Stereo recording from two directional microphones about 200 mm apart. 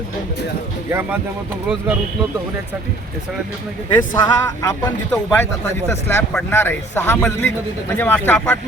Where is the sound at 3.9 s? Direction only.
15° left (ahead or behind).